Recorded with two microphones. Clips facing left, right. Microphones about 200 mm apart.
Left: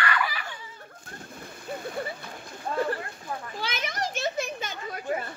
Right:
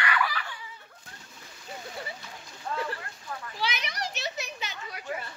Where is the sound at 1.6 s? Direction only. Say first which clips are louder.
Left 6 dB; 55° left (ahead or behind).